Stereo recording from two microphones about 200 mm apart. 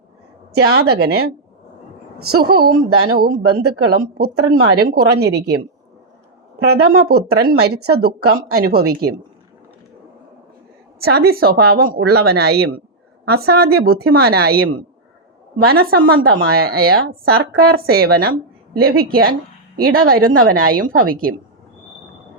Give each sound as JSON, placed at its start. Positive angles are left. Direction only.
{"t": 0.5, "sound": "speech", "side_deg": -50}
{"t": 6.6, "sound": "speech", "side_deg": -50}
{"t": 11.0, "sound": "speech", "side_deg": -50}